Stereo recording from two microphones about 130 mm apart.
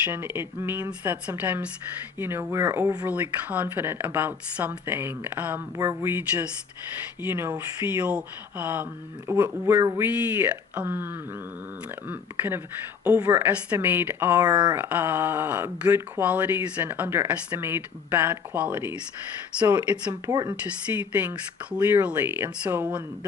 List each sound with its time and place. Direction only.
0.0 s speech: 15° right (ahead or behind)
10.1 s speech: 15° right (ahead or behind)
13.5 s speech: 15° right (ahead or behind)
14.3 s speech: 30° right (ahead or behind)
14.8 s speech: 15° right (ahead or behind)
20.3 s speech: 30° right (ahead or behind)
20.9 s speech: 15° right (ahead or behind)